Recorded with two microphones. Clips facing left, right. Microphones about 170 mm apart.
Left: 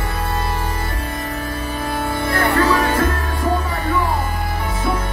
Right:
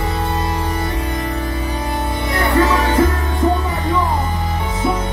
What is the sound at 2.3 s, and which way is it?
Music, 20° right (ahead or behind).